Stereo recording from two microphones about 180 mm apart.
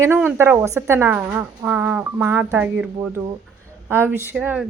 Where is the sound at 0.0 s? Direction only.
10° right (ahead or behind).